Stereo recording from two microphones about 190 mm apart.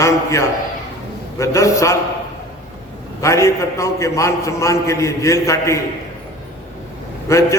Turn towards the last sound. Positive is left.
turn(degrees=15)  # may be behind; listen again after turning